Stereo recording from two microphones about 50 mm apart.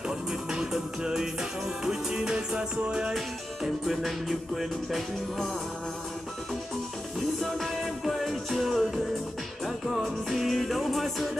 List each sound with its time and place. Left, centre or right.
0.3 s music: centre
3.2 s music: centre
7.5 s music: centre